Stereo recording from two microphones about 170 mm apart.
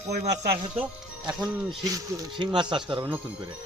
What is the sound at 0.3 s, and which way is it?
Speech, 65° right (ahead or behind).